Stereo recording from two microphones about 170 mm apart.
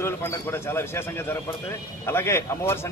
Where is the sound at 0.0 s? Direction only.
15° left (ahead or behind).